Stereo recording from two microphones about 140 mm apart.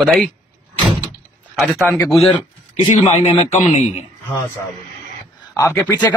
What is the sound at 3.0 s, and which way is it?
Speech, 50° left (ahead or behind).